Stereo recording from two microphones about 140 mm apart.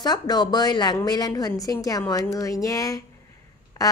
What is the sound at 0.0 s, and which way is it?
A woman's voice, 30° left (ahead or behind).